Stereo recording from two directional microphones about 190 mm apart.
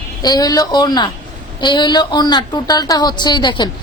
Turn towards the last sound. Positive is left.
turn(degrees=25)  # may be behind; listen again after turning